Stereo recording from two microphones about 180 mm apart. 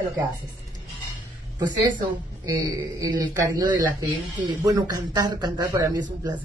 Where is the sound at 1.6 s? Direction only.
20° right (ahead or behind).